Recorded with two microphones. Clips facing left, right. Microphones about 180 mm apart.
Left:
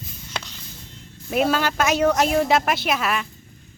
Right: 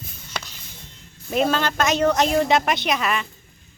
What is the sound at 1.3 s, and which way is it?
Speech, 5° left (ahead or behind).